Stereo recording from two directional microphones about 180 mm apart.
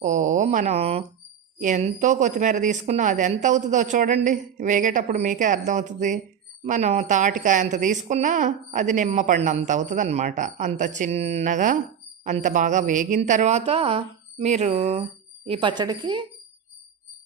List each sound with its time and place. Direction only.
0.0 s speech: 45° right (ahead or behind); by 16.2 s 25° right (ahead or behind)